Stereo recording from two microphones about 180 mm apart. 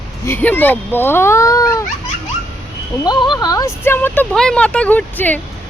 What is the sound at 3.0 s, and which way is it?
Speech, 25° left (ahead or behind).